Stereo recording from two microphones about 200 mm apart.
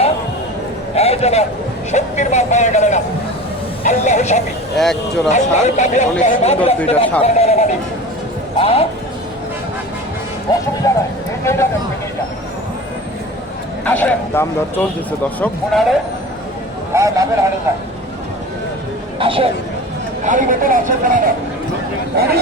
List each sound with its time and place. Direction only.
0.9 s a sound: 30° left (ahead or behind)
1.9 s speech: 35° left (ahead or behind)
4.8 s speech: centre (ahead or behind)
5.3 s a man's voice: 35° left (ahead or behind)
10.5 s a man's voice: 20° left (ahead or behind)
10.8 s a sound: 15° left (ahead or behind)
11.4 s speech: 15° left (ahead or behind)
13.8 s speech: 10° left (ahead or behind)
16.9 s speech: 15° right (ahead or behind)
19.2 s speech: 25° right (ahead or behind)
20.2 s speech: 40° right (ahead or behind)